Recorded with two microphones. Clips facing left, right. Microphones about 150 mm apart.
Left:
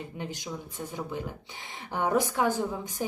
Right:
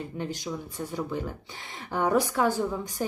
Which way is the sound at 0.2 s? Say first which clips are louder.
Right 4 dB; 15° left (ahead or behind).